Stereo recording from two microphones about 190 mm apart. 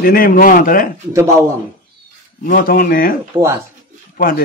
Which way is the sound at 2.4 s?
45° left (ahead or behind).